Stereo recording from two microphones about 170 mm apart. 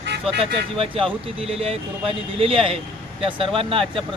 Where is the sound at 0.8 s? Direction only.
35° right (ahead or behind).